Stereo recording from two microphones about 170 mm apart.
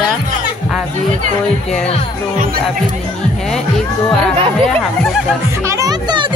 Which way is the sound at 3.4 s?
5° left (ahead or behind).